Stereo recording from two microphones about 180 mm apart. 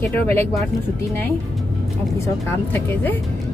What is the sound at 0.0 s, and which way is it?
Speech, 10° left (ahead or behind).